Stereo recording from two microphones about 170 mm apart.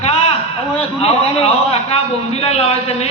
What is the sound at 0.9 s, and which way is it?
A man's voice, 35° left (ahead or behind).